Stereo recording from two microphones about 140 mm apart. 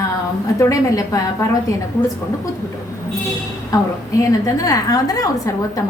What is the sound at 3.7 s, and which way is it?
A woman's voice, 25° left (ahead or behind).